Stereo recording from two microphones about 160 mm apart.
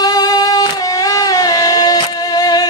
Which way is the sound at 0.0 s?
25° left (ahead or behind).